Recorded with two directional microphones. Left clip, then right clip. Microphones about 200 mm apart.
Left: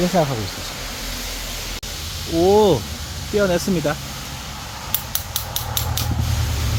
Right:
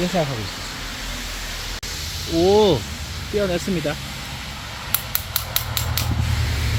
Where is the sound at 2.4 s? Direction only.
5° left (ahead or behind).